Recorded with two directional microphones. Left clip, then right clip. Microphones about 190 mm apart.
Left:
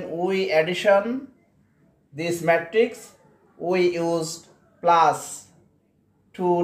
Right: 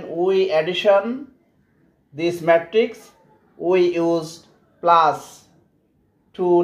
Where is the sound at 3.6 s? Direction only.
5° left (ahead or behind).